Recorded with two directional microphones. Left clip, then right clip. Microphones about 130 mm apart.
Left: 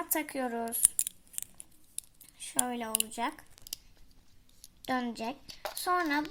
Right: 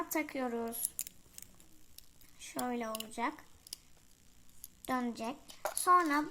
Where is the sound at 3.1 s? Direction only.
65° left (ahead or behind).